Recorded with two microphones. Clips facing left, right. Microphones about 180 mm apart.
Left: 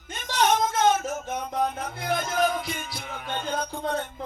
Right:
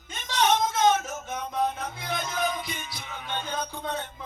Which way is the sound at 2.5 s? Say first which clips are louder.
Left 4 dB; 50° left (ahead or behind).